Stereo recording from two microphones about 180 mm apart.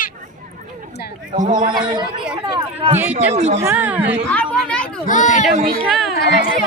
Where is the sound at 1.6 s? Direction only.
25° right (ahead or behind).